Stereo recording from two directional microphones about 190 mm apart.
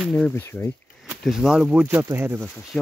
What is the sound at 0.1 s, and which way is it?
Speech, 10° left (ahead or behind).